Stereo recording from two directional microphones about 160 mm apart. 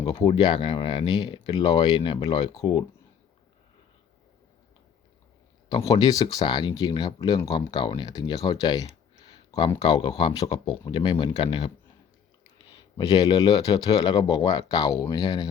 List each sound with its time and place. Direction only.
0.0 s speech: 30° left (ahead or behind)
5.6 s speech: 25° left (ahead or behind)
9.2 s clicking: 25° left (ahead or behind)
9.8 s speech: 25° left (ahead or behind)
12.7 s speech: 25° left (ahead or behind)